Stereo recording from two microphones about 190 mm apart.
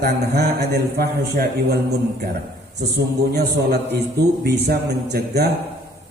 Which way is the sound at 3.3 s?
55° right (ahead or behind).